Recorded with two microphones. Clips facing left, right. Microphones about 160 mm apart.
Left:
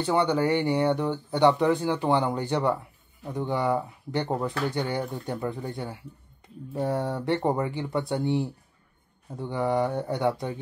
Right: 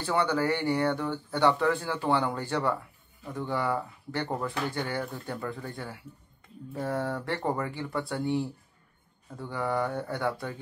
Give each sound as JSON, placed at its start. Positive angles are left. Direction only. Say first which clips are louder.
{"t": 0.0, "sound": "speech", "louder": "left 3 dB", "side_deg": 20}